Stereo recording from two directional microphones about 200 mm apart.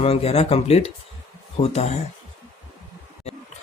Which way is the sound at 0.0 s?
30° left (ahead or behind).